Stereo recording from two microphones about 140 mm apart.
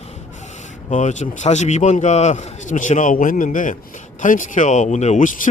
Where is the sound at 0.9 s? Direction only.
60° left (ahead or behind).